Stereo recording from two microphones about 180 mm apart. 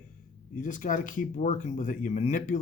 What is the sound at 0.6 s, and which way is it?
Speech, 45° left (ahead or behind).